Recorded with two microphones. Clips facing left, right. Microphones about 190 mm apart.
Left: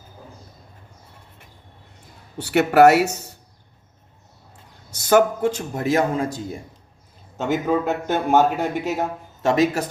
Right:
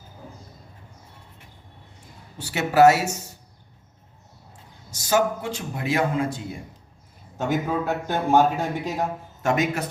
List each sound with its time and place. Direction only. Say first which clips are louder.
2.4 s speech: left 3 dB; 60° left (ahead or behind)
4.9 s a man's voice: left 5 dB; 60° left (ahead or behind); by 6.4 s 40° left (ahead or behind)
7.4 s a man's voice: left 3 dB; 20° left (ahead or behind)
9.4 s a man's voice: left 4 dB; 30° left (ahead or behind)